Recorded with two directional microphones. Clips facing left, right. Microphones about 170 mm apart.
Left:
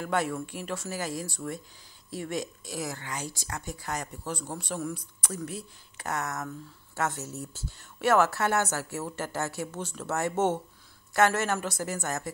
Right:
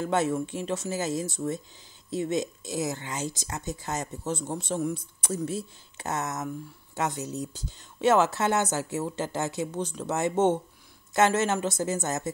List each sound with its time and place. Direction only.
0.0 s speech: 25° right (ahead or behind)